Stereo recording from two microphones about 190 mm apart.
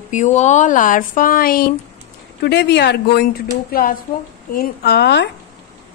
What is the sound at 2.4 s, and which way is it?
A woman's voice, 65° left (ahead or behind).